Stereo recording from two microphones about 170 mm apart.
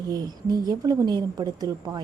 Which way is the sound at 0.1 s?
20° right (ahead or behind).